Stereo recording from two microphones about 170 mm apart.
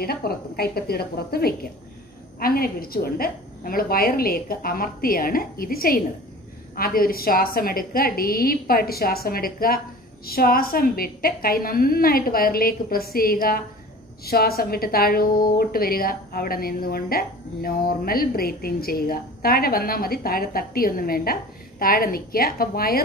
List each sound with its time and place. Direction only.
0.0 s a woman's voice: 65° left (ahead or behind)